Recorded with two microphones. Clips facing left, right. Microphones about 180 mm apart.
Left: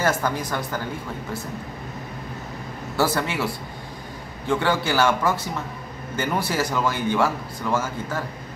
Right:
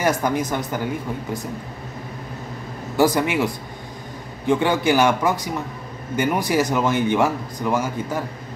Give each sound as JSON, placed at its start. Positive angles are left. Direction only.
{"t": 0.0, "sound": "speech", "side_deg": -15}
{"t": 3.0, "sound": "speech", "side_deg": -15}